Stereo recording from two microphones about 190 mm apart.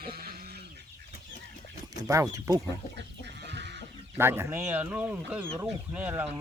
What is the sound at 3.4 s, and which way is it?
Chicken, 65° right (ahead or behind).